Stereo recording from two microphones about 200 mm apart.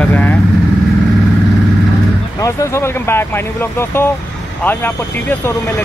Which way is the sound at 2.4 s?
15° left (ahead or behind).